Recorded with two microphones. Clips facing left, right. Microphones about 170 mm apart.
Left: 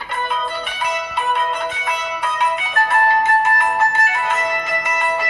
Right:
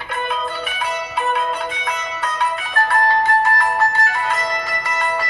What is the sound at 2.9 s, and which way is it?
Music, 20° left (ahead or behind).